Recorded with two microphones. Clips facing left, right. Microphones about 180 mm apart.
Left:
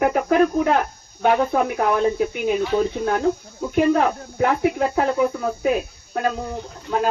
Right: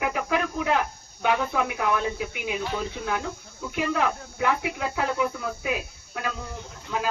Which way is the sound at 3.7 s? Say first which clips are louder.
Left 8 dB; 40° left (ahead or behind).